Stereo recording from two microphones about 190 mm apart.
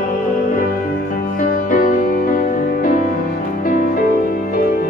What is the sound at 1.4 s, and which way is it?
Music, 45° left (ahead or behind).